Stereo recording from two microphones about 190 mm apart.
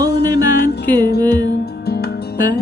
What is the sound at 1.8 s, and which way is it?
Music, 55° left (ahead or behind).